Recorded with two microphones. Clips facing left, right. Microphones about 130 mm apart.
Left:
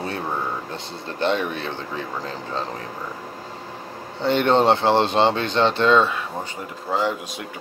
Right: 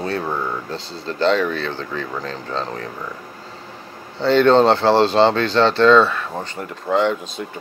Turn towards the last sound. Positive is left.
turn(degrees=5)  # may be behind; listen again after turning